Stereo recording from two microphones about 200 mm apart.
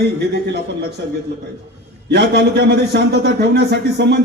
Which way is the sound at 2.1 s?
55° right (ahead or behind).